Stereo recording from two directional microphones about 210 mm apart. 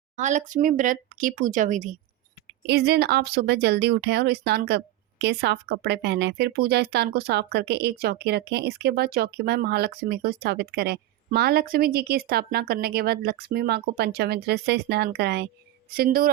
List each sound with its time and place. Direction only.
0.2 s speech: 35° right (ahead or behind)
2.5 s speech: 50° right (ahead or behind)